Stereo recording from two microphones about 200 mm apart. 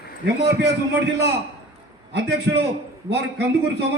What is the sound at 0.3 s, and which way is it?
A man's voice, 55° right (ahead or behind).